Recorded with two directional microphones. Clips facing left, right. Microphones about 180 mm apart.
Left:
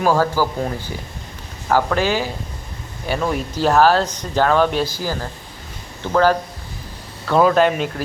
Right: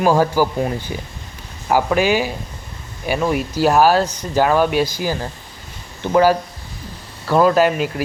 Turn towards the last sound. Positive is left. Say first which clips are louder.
# right 1 dB
turn(degrees=-5)  # may be behind; listen again after turning